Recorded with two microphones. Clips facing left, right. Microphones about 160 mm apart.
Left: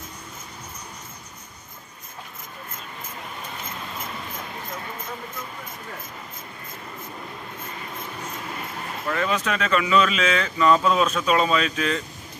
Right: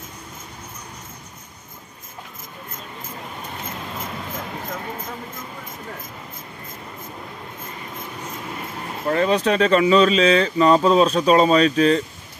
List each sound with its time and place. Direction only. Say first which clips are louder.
9.0 s speech: right 7 dB; 35° right (ahead or behind)